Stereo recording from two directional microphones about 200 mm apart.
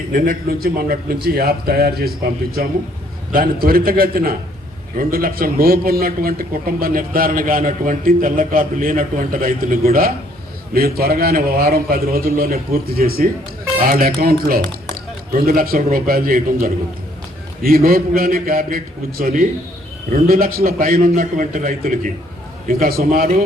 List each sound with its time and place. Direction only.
0.1 s a man's voice: 45° right (ahead or behind)